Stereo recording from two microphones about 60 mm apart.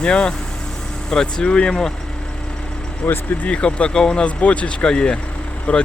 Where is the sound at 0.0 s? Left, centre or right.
Centre.